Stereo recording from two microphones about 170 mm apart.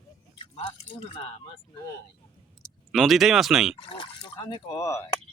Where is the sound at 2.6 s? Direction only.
Centre (ahead or behind).